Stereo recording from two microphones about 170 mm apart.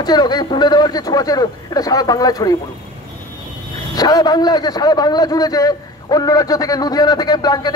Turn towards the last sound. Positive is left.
turn(degrees=25)  # may be behind; listen again after turning